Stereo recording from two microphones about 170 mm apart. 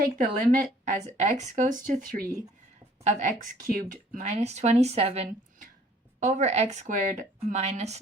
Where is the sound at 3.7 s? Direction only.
55° right (ahead or behind).